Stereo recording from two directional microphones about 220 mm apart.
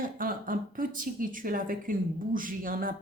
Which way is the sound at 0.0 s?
40° right (ahead or behind).